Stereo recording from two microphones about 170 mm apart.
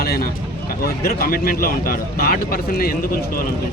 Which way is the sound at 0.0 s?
60° left (ahead or behind).